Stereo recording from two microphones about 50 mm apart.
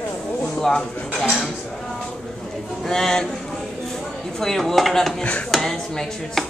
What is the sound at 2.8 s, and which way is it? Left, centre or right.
Speech, centre.